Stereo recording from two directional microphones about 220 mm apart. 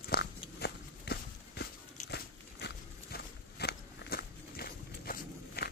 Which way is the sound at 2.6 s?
45° left (ahead or behind).